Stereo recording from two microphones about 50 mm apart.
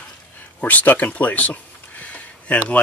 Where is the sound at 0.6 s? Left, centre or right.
Left.